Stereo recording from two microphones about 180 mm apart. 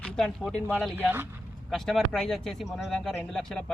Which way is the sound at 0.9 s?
10° right (ahead or behind).